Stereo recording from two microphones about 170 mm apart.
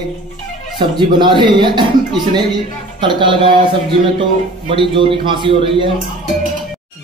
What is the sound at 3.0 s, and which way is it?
A man's voice, 30° right (ahead or behind).